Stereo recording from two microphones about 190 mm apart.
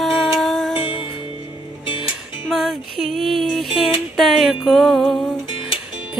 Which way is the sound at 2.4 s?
Centre (ahead or behind).